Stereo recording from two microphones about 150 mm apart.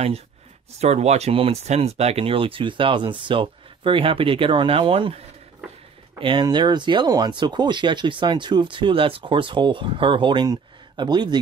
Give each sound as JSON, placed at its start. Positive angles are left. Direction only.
{"t": 0.7, "sound": "speech", "side_deg": -45}